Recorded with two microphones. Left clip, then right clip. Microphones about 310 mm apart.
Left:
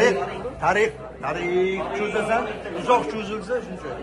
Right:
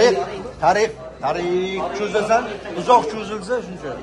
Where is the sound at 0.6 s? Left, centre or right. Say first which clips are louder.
Right 4 dB; right.